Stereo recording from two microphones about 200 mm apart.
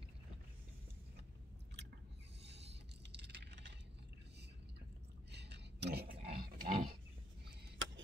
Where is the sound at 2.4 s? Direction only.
60° right (ahead or behind).